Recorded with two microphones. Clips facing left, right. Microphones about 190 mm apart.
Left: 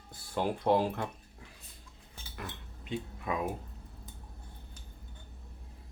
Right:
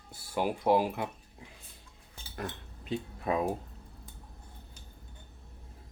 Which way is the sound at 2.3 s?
40° right (ahead or behind).